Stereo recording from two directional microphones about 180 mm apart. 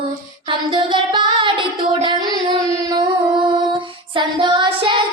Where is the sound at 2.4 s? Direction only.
25° right (ahead or behind).